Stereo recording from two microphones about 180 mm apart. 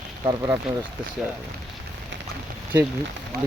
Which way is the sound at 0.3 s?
15° right (ahead or behind).